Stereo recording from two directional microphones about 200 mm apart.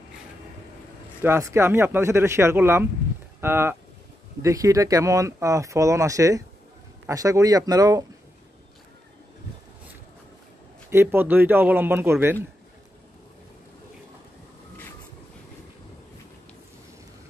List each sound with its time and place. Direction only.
1.2 s speech: 15° right (ahead or behind)
10.9 s speech: 10° right (ahead or behind)